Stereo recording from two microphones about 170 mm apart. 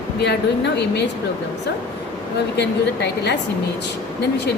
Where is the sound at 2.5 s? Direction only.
90° left.